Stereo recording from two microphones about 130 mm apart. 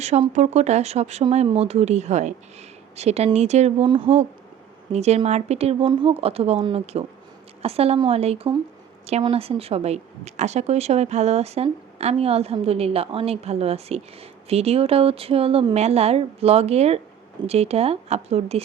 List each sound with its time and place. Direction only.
0.0 s speech: 55° right (ahead or behind)
3.8 s speech: 40° right (ahead or behind)
4.9 s speech: 55° right (ahead or behind)